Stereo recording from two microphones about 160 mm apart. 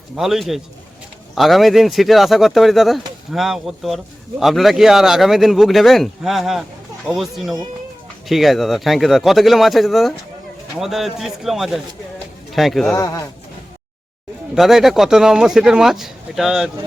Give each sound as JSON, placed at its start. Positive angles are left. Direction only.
{"t": 0.2, "sound": "a man's voice", "side_deg": 0}
{"t": 12.9, "sound": "speech", "side_deg": 20}
{"t": 14.5, "sound": "a man's voice", "side_deg": 0}